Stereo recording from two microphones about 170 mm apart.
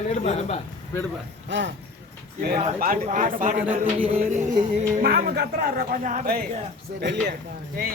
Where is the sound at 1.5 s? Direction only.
90° right.